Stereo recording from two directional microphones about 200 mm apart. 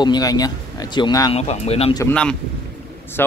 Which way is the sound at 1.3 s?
30° left (ahead or behind).